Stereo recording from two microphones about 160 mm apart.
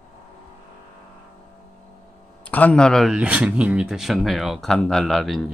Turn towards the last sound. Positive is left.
turn(degrees=0)  # may be behind; listen again after turning